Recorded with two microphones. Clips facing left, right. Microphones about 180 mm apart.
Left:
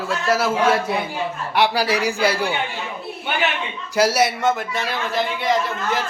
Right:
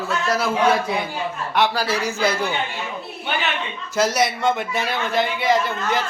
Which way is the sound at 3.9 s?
10° left (ahead or behind).